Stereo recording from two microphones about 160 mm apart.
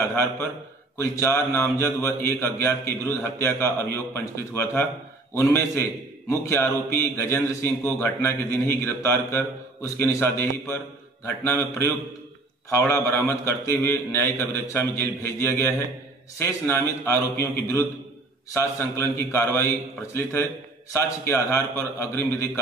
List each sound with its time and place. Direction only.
0.0 s a man's voice: 15° left (ahead or behind)
20.9 s a man's voice: 15° left (ahead or behind)